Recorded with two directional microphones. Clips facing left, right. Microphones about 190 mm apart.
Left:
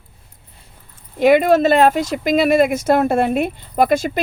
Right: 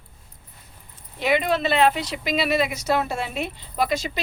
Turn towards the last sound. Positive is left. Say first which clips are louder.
# left 8 dB
turn(degrees=50)  # may be behind; listen again after turning